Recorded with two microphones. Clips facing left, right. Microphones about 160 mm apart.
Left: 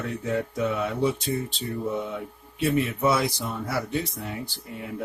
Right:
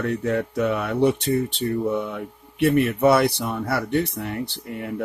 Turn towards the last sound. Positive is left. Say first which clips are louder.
# right 6 dB
turn(degrees=-60)  # may be behind; listen again after turning